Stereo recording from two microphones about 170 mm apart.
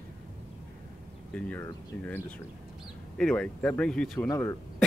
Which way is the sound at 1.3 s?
10° left (ahead or behind).